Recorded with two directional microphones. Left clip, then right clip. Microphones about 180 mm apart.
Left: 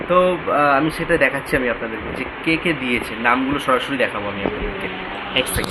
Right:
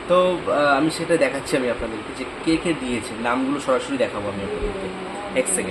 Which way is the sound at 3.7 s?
15° left (ahead or behind).